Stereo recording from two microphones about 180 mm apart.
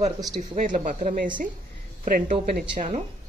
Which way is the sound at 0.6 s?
45° right (ahead or behind).